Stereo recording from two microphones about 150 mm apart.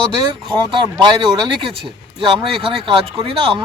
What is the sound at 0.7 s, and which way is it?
Speech, 30° right (ahead or behind).